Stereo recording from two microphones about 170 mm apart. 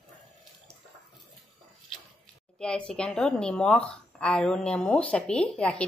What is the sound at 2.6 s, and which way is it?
Speech, 5° left (ahead or behind).